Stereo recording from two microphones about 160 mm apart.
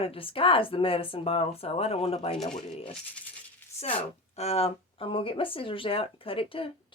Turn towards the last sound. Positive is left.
turn(degrees=35)  # may be behind; listen again after turning